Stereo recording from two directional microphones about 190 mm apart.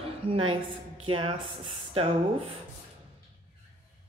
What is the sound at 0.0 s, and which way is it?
A woman's voice, 30° right (ahead or behind).